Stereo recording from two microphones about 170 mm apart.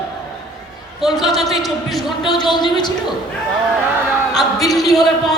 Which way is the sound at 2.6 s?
25° left (ahead or behind).